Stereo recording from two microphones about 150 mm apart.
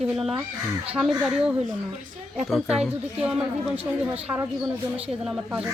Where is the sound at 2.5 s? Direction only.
5° right (ahead or behind).